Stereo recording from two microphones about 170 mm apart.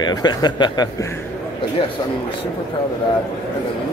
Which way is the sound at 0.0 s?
25° left (ahead or behind).